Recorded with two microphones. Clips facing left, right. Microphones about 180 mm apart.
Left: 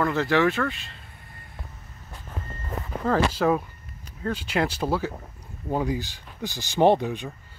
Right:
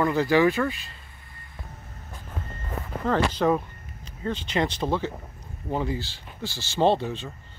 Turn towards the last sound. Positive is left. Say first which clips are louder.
# left 3 dB
turn(degrees=15)  # may be behind; listen again after turning